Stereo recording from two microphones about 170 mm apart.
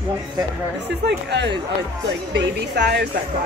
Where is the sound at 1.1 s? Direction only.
90° right.